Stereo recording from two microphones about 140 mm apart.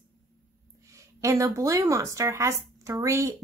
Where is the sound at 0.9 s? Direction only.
20° right (ahead or behind).